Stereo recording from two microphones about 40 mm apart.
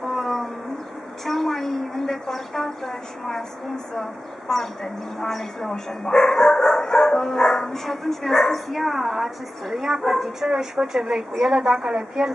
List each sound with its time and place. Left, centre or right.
0.0 s a sound: centre
1.2 s speech: centre
4.5 s speech: centre
8.7 s a woman's voice: centre
10.5 s a woman's voice: centre